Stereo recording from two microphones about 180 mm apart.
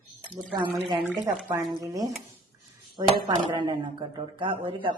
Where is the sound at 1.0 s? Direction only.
10° right (ahead or behind).